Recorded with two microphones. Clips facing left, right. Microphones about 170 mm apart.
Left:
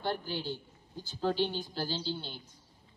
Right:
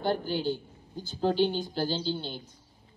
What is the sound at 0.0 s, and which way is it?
A woman's voice, 40° right (ahead or behind).